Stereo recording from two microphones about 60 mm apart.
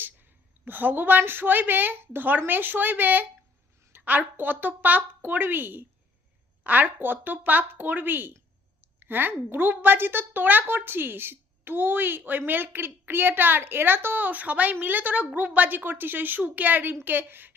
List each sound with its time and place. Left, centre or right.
0.0 s a woman's voice: right